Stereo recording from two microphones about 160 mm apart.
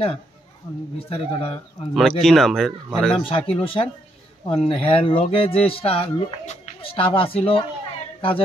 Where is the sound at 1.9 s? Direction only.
Centre (ahead or behind).